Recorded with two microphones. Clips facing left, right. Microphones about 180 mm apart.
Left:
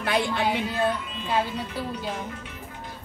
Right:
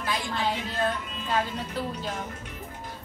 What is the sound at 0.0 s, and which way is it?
Speech, 65° left (ahead or behind).